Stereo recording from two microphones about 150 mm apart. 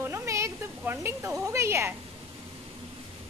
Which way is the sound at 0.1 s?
20° right (ahead or behind).